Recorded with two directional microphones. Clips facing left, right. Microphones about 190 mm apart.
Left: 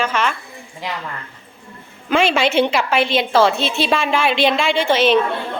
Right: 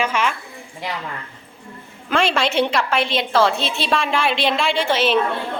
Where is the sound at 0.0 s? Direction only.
10° right (ahead or behind).